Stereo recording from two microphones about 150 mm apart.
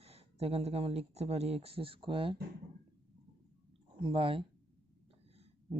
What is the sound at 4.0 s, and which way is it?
Speech, 35° right (ahead or behind).